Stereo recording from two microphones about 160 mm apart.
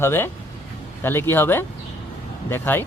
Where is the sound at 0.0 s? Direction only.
15° left (ahead or behind).